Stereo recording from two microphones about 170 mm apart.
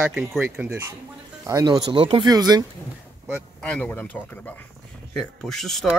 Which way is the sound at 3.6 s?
5° left (ahead or behind).